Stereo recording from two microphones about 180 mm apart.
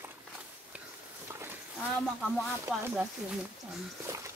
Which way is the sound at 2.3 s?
5° right (ahead or behind).